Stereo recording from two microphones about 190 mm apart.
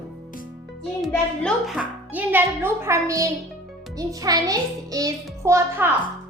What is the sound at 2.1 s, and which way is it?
A child's voice, 10° right (ahead or behind).